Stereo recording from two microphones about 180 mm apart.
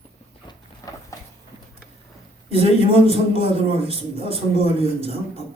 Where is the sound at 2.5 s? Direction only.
30° right (ahead or behind).